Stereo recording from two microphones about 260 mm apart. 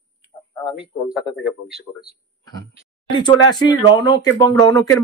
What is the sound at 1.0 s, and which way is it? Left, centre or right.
Speech, centre.